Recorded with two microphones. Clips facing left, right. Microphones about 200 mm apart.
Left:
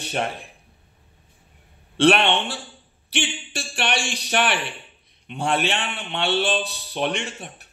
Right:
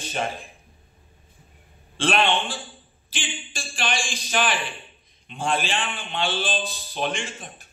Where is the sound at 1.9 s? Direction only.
65° left (ahead or behind).